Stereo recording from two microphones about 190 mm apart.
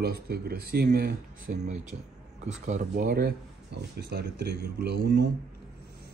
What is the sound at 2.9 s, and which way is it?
Speech, 55° right (ahead or behind).